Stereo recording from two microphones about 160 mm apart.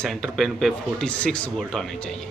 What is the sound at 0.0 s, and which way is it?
Speech, 5° left (ahead or behind).